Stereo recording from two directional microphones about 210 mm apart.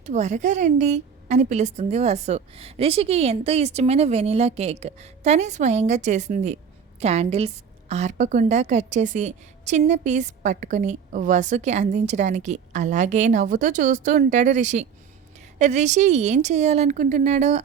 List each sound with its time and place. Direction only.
0.0 s a woman's voice: 35° right (ahead or behind)